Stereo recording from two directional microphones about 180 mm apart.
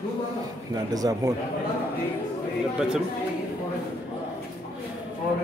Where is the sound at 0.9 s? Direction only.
20° right (ahead or behind).